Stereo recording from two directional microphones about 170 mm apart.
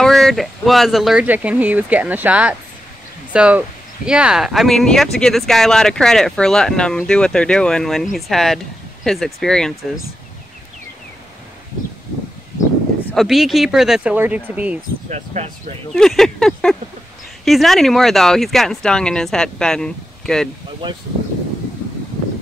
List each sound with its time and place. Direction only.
0.0 s speech: centre (ahead or behind)
13.1 s speech: centre (ahead or behind)
15.0 s speech: 40° right (ahead or behind)
15.9 s speech: 5° left (ahead or behind)
20.8 s speech: 25° right (ahead or behind)